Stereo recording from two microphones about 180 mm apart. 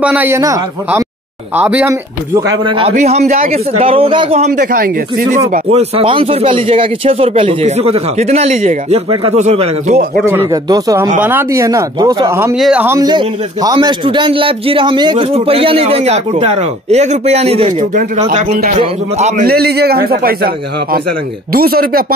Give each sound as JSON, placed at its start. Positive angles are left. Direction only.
{"t": 0.0, "sound": "speech", "side_deg": -10}
{"t": 2.6, "sound": "a man's voice", "side_deg": -30}
{"t": 2.9, "sound": "a man's voice", "side_deg": -40}
{"t": 3.3, "sound": "speech", "side_deg": -50}
{"t": 3.5, "sound": "a man's voice", "side_deg": -30}
{"t": 5.7, "sound": "a man's voice", "side_deg": -30}
{"t": 10.2, "sound": "speech", "side_deg": -15}
{"t": 12.5, "sound": "speech", "side_deg": 0}
{"t": 12.8, "sound": "a man's voice", "side_deg": -15}
{"t": 19.4, "sound": "speech", "side_deg": -60}